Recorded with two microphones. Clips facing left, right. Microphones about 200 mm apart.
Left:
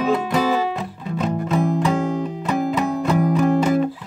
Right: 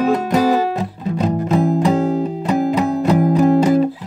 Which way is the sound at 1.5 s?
35° right (ahead or behind).